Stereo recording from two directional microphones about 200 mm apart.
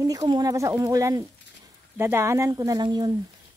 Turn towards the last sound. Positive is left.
turn(degrees=-20)  # may be behind; listen again after turning